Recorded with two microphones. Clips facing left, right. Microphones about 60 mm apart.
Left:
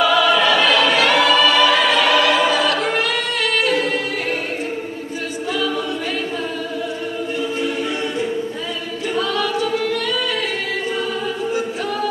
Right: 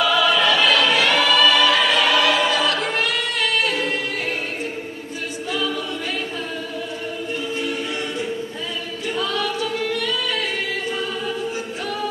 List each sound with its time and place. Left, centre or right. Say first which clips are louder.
0.0 s choir: left 3 dB; centre
2.8 s choir: left 3 dB; centre